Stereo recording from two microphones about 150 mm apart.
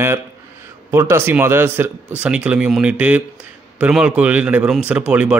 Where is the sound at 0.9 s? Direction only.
15° right (ahead or behind).